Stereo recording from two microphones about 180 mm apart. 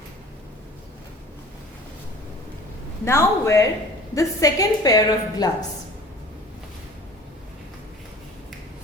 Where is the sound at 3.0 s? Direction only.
15° left (ahead or behind).